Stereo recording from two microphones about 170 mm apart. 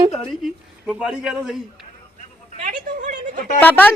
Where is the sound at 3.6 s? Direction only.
10° left (ahead or behind).